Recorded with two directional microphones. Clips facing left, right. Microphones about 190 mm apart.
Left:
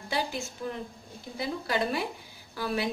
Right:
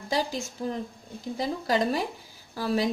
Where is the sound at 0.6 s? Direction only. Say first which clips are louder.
Right 4 dB; 35° right (ahead or behind).